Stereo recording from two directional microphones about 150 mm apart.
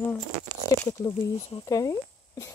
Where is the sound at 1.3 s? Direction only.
45° left (ahead or behind).